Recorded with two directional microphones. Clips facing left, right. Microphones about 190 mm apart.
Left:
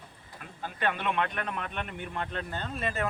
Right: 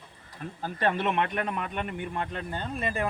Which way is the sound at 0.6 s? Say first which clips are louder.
Right 4 dB; 35° right (ahead or behind).